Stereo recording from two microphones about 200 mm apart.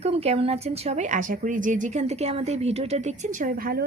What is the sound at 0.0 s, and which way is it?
A woman's voice, 30° right (ahead or behind).